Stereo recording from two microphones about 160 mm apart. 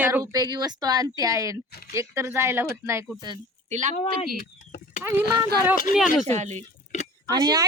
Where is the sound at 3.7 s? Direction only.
50° right (ahead or behind).